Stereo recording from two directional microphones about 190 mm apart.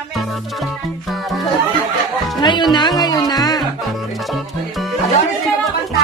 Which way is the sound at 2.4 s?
25° left (ahead or behind).